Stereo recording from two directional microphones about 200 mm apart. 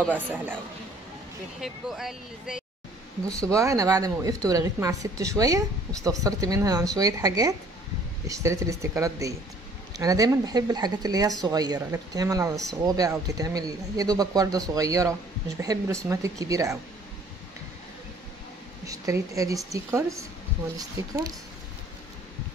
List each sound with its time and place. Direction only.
0.1 s a woman's voice: 10° right (ahead or behind)
1.6 s speech: centre (ahead or behind)
3.3 s a woman's voice: 15° right (ahead or behind)
18.9 s a woman's voice: 15° right (ahead or behind)